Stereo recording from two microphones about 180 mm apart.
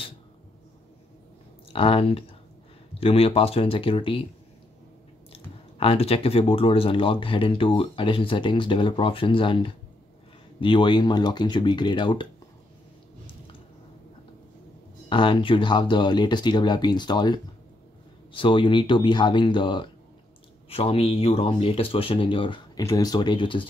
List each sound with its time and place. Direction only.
1.7 s speech: 30° left (ahead or behind)
5.3 s speech: 30° left (ahead or behind)
15.0 s speech: 30° left (ahead or behind)